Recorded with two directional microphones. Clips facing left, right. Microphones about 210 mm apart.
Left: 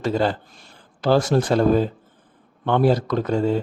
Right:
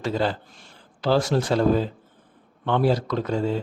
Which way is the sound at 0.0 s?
50° left (ahead or behind).